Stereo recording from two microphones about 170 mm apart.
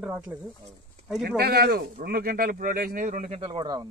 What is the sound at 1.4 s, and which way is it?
Speech, 65° right (ahead or behind).